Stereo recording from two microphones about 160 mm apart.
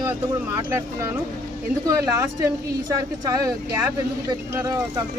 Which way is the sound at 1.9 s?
20° right (ahead or behind).